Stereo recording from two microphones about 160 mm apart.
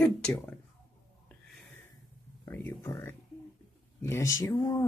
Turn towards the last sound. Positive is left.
turn(degrees=25)  # may be behind; listen again after turning